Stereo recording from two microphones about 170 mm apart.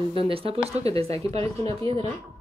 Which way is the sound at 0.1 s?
30° right (ahead or behind).